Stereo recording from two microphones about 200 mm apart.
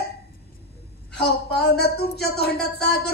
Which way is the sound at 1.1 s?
55° left (ahead or behind).